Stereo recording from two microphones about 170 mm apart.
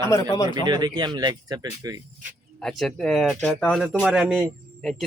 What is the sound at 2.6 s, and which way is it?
Speech, 5° left (ahead or behind).